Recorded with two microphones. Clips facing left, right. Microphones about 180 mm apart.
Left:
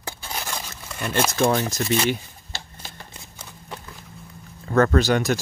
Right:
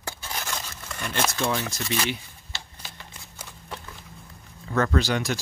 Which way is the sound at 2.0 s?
40° left (ahead or behind).